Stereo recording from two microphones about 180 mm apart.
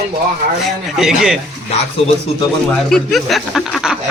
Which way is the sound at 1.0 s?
5° right (ahead or behind).